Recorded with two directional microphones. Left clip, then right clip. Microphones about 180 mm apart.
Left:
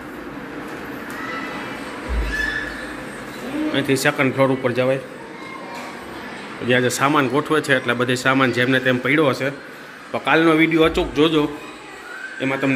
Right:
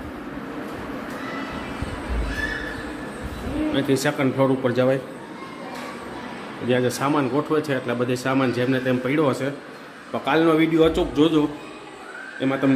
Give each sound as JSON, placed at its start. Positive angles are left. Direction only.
{"t": 3.7, "sound": "speech", "side_deg": -5}
{"t": 4.6, "sound": "a man's voice", "side_deg": -20}
{"t": 6.7, "sound": "a man's voice", "side_deg": 0}